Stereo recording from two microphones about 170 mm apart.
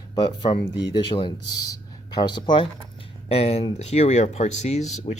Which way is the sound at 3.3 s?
35° left (ahead or behind).